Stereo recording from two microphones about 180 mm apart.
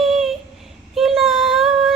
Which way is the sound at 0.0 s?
Centre (ahead or behind).